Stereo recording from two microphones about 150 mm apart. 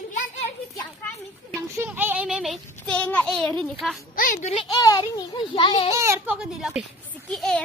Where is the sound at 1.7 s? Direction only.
15° right (ahead or behind); by 3.9 s centre (ahead or behind).